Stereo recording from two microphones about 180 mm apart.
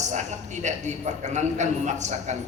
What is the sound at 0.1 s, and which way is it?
A woman's voice, 40° right (ahead or behind).